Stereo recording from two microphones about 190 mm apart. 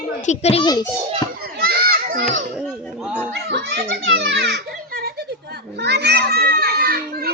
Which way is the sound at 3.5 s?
65° right (ahead or behind).